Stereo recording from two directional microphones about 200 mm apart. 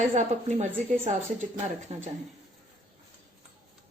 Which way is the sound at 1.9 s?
30° right (ahead or behind).